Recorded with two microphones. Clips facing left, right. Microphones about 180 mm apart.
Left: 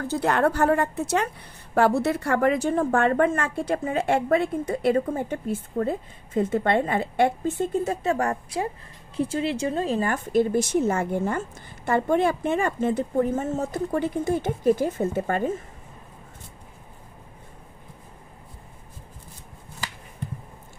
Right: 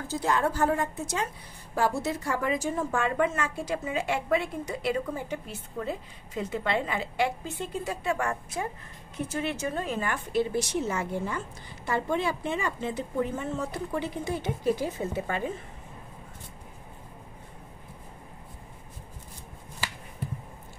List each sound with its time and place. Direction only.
0.1 s a woman's voice: 65° left (ahead or behind); by 10.0 s 30° left (ahead or behind)
10.0 s a woman's voice: 45° left (ahead or behind)